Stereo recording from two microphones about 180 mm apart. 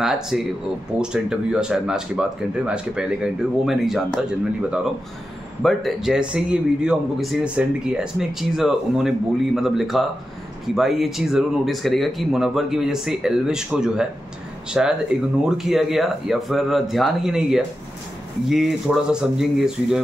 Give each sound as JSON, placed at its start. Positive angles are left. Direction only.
{"t": 0.0, "sound": "speech", "side_deg": -5}